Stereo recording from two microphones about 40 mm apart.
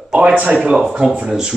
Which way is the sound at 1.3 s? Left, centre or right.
Centre.